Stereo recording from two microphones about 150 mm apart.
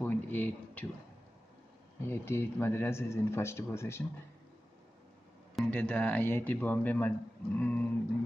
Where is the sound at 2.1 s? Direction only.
15° left (ahead or behind).